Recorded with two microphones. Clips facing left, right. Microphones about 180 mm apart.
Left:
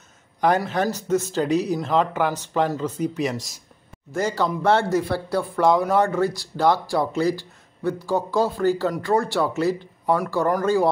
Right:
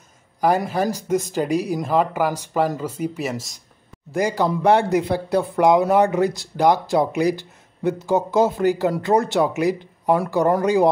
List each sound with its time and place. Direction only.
0.7 s speech: 10° right (ahead or behind)
4.1 s speech: 15° right (ahead or behind)